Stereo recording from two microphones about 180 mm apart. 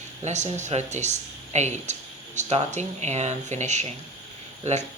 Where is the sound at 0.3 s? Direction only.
40° right (ahead or behind).